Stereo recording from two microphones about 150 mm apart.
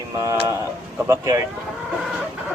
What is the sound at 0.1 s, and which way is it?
Mantra, 20° right (ahead or behind).